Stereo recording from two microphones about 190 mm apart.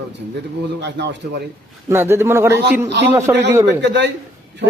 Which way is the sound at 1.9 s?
10° right (ahead or behind).